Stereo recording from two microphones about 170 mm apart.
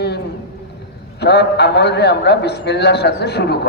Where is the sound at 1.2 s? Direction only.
80° left.